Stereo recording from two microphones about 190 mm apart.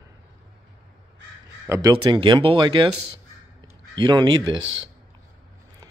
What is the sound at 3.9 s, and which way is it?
Speech, 20° right (ahead or behind).